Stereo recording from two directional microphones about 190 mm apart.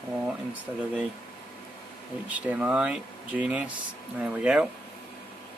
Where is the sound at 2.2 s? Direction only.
10° right (ahead or behind).